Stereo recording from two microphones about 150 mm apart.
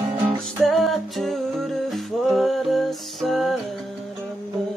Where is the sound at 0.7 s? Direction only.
Centre (ahead or behind).